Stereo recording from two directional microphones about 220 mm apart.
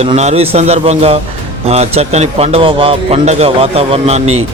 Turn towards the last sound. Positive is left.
turn(degrees=-30)  # may be behind; listen again after turning